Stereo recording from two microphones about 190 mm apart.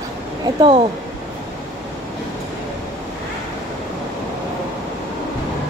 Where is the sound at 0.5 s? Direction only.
30° right (ahead or behind).